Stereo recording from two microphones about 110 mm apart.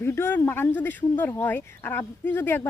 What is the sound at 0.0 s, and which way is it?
Speech, 20° left (ahead or behind).